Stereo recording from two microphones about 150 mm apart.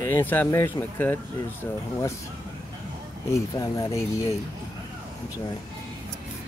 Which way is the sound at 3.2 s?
20° left (ahead or behind).